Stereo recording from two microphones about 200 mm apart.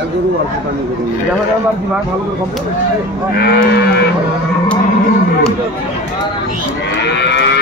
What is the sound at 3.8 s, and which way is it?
Speech, 55° left (ahead or behind).